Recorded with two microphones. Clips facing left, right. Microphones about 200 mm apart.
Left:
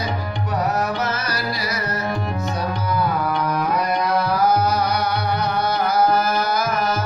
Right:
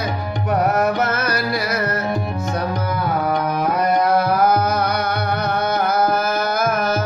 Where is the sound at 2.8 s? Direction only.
50° right (ahead or behind).